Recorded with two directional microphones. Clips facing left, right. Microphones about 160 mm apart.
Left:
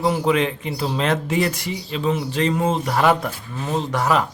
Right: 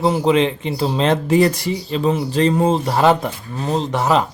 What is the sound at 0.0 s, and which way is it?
A man's voice, 25° right (ahead or behind).